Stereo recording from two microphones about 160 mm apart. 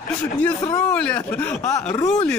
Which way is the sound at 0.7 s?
20° left (ahead or behind).